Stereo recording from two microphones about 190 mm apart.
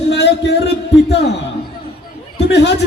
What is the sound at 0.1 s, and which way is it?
Music, 60° left (ahead or behind).